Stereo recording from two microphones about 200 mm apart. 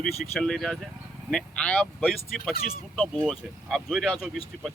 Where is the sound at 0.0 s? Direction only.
5° left (ahead or behind).